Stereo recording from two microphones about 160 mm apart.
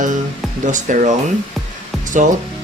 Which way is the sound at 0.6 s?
50° right (ahead or behind).